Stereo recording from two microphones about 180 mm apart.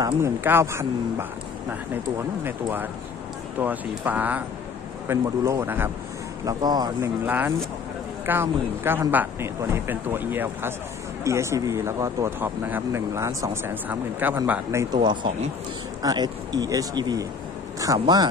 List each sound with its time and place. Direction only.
0.0 s speech: 15° right (ahead or behind)
2.4 s a man's voice: 10° right (ahead or behind)
7.2 s speech: 10° right (ahead or behind)
15.0 s a man's voice: 30° right (ahead or behind)